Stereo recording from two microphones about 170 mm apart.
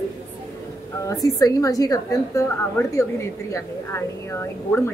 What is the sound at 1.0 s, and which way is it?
A woman's voice, 20° left (ahead or behind).